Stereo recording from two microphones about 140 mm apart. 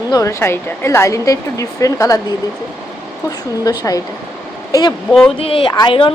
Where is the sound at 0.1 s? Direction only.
25° left (ahead or behind).